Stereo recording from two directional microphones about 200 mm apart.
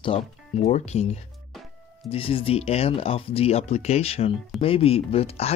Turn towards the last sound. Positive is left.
turn(degrees=30)  # may be behind; listen again after turning